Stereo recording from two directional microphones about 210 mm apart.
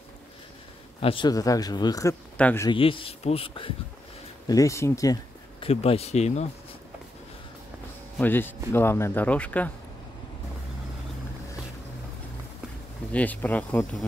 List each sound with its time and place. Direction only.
1.0 s speech: 20° left (ahead or behind)
2.7 s speech: 25° left (ahead or behind)
4.5 s speech: 15° left (ahead or behind)
5.7 s speech: 30° left (ahead or behind)
8.2 s speech: 10° left (ahead or behind)
13.1 s speech: 5° left (ahead or behind)